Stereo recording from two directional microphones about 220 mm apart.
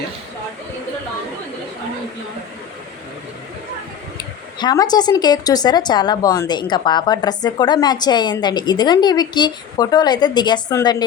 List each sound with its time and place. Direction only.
4.2 s speech: 15° left (ahead or behind)